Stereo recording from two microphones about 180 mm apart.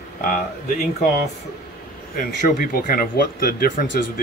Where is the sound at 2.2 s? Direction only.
50° left (ahead or behind).